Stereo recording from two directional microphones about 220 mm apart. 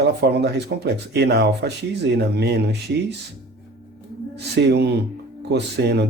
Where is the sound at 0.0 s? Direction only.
50° right (ahead or behind).